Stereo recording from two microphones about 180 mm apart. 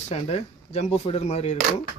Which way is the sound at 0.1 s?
35° left (ahead or behind).